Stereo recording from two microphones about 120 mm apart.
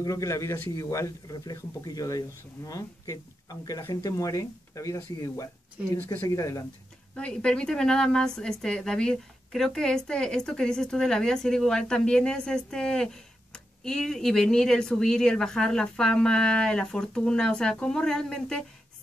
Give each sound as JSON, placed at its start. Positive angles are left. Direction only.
{"t": 0.0, "sound": "speech", "side_deg": 25}
{"t": 7.2, "sound": "a woman's voice", "side_deg": 10}